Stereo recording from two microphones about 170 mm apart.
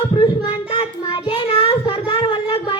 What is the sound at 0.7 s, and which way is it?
Child singing, 30° left (ahead or behind).